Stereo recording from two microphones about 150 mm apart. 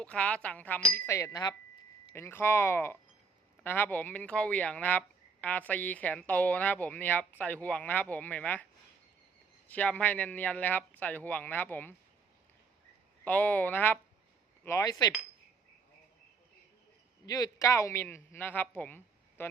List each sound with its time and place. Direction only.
0.0 s speech: 10° left (ahead or behind)
9.6 s speech: 10° left (ahead or behind)
13.2 s speech: 10° left (ahead or behind)
14.6 s chink: 20° left (ahead or behind)
17.2 s speech: 25° left (ahead or behind)